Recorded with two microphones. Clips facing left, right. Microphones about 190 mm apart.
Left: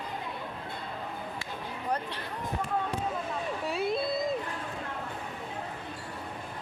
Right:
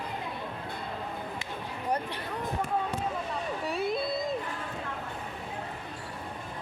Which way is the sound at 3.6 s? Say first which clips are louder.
Even; centre (ahead or behind).